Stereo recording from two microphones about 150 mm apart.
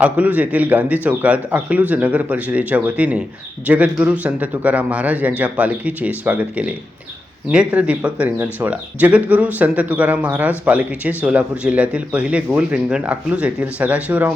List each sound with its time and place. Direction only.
0.0 s speech: 10° right (ahead or behind)